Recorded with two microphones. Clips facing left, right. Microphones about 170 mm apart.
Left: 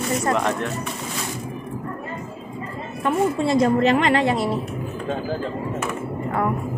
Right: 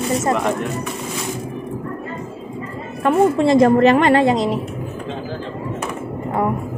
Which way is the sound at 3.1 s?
70° right (ahead or behind).